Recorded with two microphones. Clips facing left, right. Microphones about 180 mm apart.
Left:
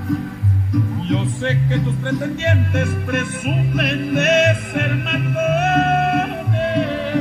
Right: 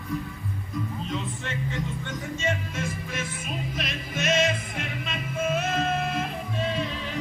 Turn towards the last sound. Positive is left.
turn(degrees=65)  # may be behind; listen again after turning